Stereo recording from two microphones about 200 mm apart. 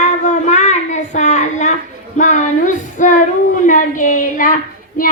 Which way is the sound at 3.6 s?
40° left (ahead or behind).